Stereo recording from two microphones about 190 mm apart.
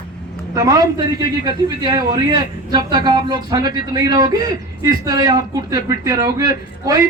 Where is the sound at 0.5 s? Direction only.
20° right (ahead or behind).